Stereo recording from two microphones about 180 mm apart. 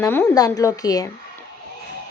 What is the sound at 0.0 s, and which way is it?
A woman's voice, 10° left (ahead or behind).